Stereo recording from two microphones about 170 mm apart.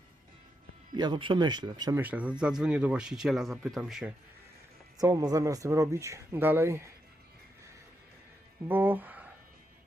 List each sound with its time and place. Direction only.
0.9 s speech: 25° right (ahead or behind)
2.0 s speech: 10° right (ahead or behind)
4.9 s speech: 20° right (ahead or behind)
8.6 s speech: 10° right (ahead or behind)